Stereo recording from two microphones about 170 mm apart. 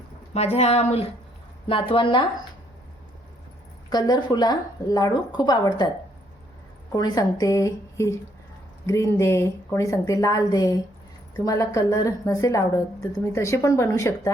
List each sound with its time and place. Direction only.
0.3 s a woman's voice: 40° left (ahead or behind)
3.9 s a woman's voice: 25° left (ahead or behind)
6.9 s a woman's voice: 25° left (ahead or behind)